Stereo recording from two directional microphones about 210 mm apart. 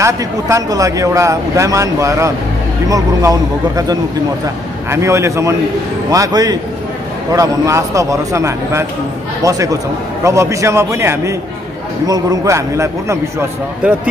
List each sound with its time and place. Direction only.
0.0 s speech: 15° right (ahead or behind)